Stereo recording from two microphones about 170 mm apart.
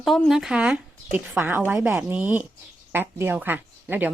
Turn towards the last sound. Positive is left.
turn(degrees=-10)  # may be behind; listen again after turning